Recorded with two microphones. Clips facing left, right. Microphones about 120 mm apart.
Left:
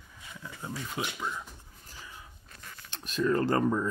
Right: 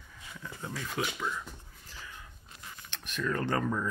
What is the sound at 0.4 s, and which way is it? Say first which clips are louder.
Speech: left 1 dB; 15° left (ahead or behind).